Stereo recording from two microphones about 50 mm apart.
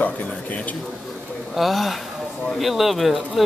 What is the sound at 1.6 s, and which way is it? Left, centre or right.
Speech, centre.